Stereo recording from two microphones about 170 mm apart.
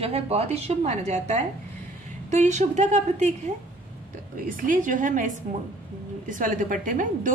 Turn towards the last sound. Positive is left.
turn(degrees=-50)  # may be behind; listen again after turning